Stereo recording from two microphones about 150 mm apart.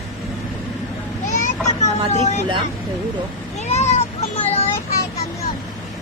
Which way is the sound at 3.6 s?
50° left (ahead or behind).